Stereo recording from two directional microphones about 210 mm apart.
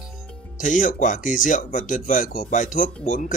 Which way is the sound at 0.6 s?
40° left (ahead or behind).